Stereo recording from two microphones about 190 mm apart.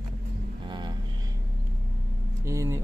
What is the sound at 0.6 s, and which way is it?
Vehicle, 25° right (ahead or behind).